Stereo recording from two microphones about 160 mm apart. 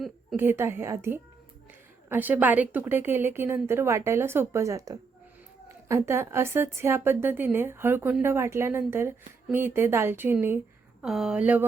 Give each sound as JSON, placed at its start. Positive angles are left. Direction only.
{"t": 0.3, "sound": "a woman's voice", "side_deg": -15}
{"t": 11.0, "sound": "speech", "side_deg": 0}